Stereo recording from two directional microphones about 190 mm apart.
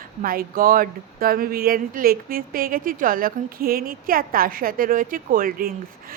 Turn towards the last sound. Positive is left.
turn(degrees=-50)  # may be behind; listen again after turning